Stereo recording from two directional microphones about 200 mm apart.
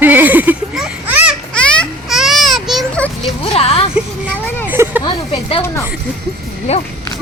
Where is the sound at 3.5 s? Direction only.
30° left (ahead or behind).